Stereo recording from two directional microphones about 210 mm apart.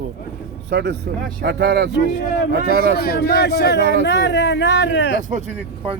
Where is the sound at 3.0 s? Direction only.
50° left (ahead or behind).